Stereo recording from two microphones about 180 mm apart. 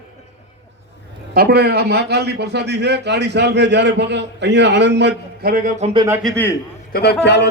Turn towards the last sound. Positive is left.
turn(degrees=70)  # may be behind; listen again after turning